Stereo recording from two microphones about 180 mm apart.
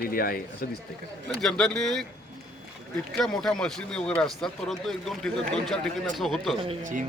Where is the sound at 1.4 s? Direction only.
5° left (ahead or behind).